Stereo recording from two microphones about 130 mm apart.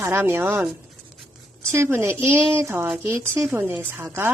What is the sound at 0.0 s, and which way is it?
Speech, 20° right (ahead or behind).